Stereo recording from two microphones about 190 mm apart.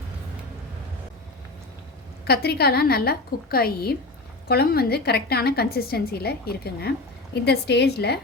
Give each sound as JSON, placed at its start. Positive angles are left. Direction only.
{"t": 2.2, "sound": "a woman's voice", "side_deg": 55}